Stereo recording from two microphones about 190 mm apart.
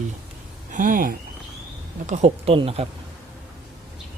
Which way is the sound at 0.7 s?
45° right (ahead or behind).